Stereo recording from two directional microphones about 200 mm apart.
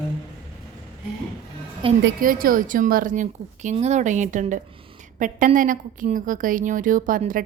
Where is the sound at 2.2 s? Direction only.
45° right (ahead or behind).